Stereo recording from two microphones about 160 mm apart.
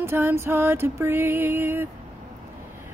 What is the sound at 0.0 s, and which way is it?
Female singing, 15° right (ahead or behind).